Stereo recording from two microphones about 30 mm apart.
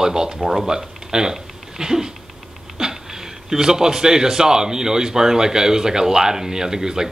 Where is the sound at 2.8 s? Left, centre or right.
Centre.